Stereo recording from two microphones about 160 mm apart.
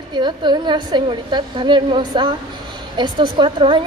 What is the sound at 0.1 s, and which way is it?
A woman's voice, 30° right (ahead or behind).